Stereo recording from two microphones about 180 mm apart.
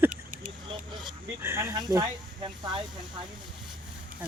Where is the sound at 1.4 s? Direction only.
15° right (ahead or behind).